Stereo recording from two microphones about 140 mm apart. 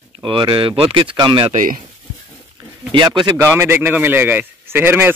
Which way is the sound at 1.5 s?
75° right (ahead or behind).